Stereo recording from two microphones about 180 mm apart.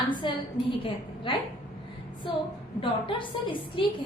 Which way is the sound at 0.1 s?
25° left (ahead or behind).